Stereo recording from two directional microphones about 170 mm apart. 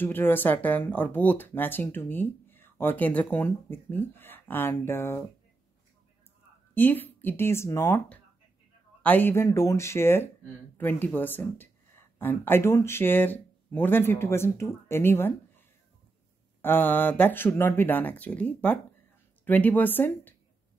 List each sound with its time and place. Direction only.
0.0 s speech: 10° left (ahead or behind)
6.7 s speech: 10° left (ahead or behind)
16.6 s speech: 10° left (ahead or behind)